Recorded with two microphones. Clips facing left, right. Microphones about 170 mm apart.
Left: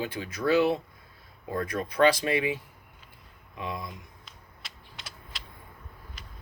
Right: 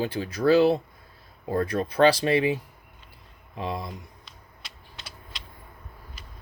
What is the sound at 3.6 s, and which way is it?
Speech, 30° right (ahead or behind).